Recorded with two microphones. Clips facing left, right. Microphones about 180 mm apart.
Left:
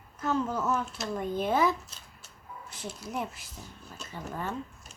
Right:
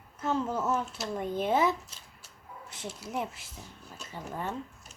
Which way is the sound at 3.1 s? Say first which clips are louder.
Right 1 dB; 25° right (ahead or behind).